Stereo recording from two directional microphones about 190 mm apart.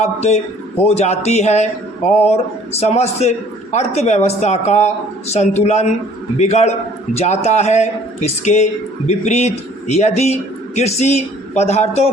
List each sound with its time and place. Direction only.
0.0 s a man's voice: 35° left (ahead or behind)